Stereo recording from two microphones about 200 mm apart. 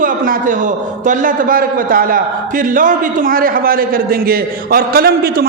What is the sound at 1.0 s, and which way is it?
A man's voice, 45° right (ahead or behind).